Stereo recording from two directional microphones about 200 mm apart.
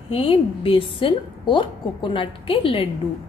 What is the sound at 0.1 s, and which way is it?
A woman's voice, 25° left (ahead or behind).